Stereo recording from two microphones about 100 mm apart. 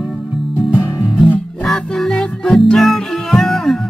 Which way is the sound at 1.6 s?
5° left (ahead or behind).